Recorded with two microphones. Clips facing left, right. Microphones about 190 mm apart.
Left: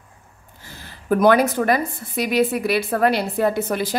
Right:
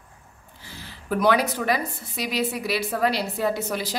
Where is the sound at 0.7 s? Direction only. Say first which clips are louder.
Left 8 dB; 45° left (ahead or behind).